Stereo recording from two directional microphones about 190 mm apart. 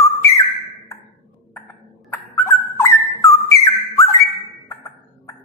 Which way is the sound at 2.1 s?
15° left (ahead or behind).